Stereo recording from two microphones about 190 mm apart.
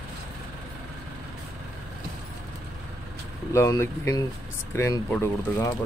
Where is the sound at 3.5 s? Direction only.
15° left (ahead or behind).